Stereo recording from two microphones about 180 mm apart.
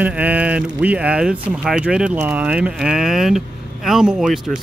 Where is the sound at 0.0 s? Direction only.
10° right (ahead or behind).